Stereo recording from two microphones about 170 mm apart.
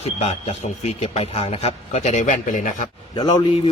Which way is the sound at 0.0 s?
35° left (ahead or behind).